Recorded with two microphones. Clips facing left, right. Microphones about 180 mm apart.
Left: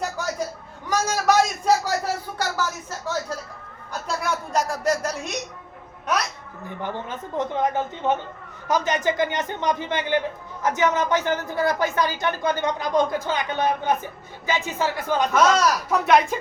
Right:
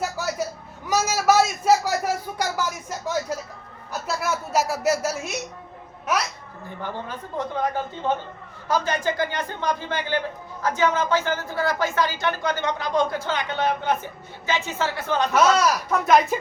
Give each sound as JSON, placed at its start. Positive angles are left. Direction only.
{"t": 0.2, "sound": "a sound", "side_deg": -5}
{"t": 6.8, "sound": "a man's voice", "side_deg": 20}
{"t": 15.3, "sound": "speech", "side_deg": -5}